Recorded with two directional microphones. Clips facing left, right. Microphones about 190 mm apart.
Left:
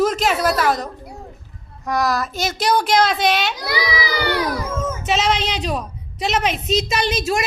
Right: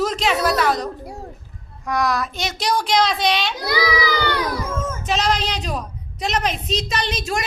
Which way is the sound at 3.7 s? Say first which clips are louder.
Right 5 dB; 25° left (ahead or behind).